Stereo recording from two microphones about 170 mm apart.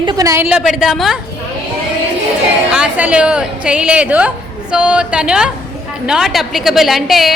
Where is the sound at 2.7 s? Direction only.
5° right (ahead or behind).